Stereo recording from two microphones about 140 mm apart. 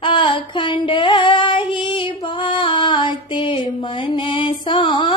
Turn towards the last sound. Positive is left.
turn(degrees=35)  # may be behind; listen again after turning